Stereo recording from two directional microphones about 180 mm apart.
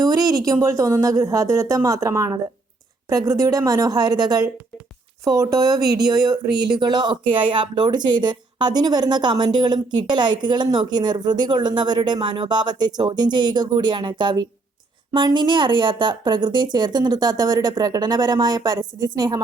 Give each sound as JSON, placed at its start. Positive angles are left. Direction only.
{"t": 0.0, "sound": "speech", "side_deg": -20}